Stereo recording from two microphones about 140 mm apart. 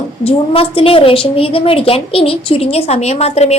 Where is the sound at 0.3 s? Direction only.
40° left (ahead or behind).